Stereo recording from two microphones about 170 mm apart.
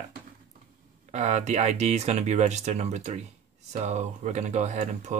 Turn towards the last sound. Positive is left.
turn(degrees=-45)  # may be behind; listen again after turning